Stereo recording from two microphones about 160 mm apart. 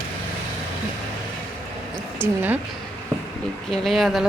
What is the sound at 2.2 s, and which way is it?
Speech, 10° right (ahead or behind).